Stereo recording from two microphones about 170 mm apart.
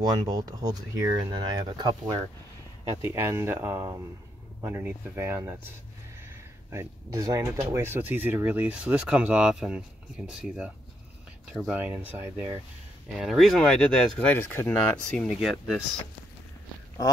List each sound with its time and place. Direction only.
0.2 s speech: 25° right (ahead or behind)
3.0 s speech: 15° right (ahead or behind)
6.7 s speech: 15° right (ahead or behind); by 15.8 s centre (ahead or behind)